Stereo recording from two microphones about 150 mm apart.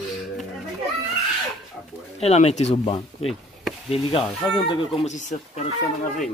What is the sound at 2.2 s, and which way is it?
Speech, 45° left (ahead or behind).